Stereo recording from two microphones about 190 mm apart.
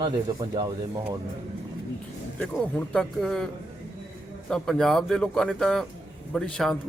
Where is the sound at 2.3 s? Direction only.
5° left (ahead or behind).